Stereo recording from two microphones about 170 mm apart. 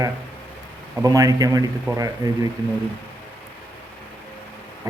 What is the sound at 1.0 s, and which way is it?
Speech, 20° right (ahead or behind).